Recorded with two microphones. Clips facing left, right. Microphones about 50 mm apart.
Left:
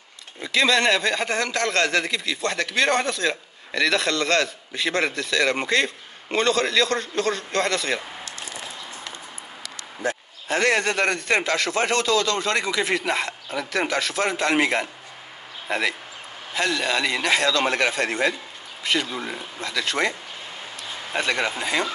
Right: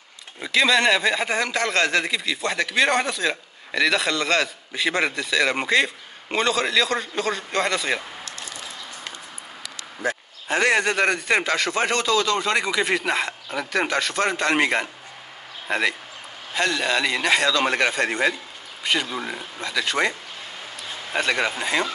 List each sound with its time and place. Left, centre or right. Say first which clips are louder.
0.4 s speech: right 1 dB; centre
10.0 s speech: even; centre